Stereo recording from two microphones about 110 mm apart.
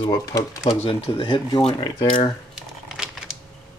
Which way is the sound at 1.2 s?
45° left (ahead or behind).